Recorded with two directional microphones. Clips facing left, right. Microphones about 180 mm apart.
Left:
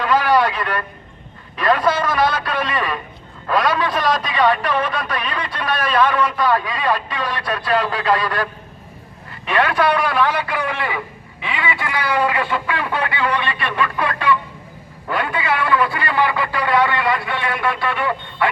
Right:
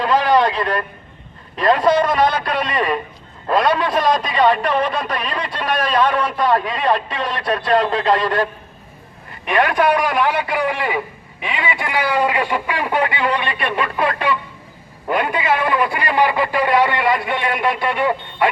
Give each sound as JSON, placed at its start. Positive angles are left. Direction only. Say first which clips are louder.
{"t": 0.0, "sound": "vehicle", "louder": "right 1 dB", "side_deg": -20}
{"t": 1.5, "sound": "a man's voice", "louder": "right 3 dB", "side_deg": -25}
{"t": 5.9, "sound": "a man's voice", "louder": "left 2 dB", "side_deg": -35}
{"t": 9.5, "sound": "a man's voice", "louder": "right 1 dB", "side_deg": -15}